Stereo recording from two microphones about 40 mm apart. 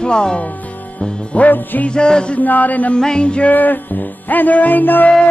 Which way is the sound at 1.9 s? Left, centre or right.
Left.